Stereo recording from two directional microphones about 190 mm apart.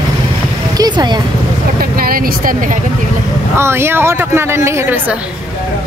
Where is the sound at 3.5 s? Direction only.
15° right (ahead or behind).